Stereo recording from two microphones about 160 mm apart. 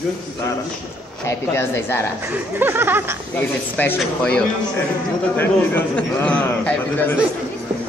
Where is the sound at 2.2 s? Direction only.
15° right (ahead or behind).